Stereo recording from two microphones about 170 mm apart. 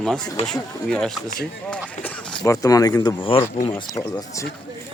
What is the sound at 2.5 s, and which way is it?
Speech, 20° left (ahead or behind).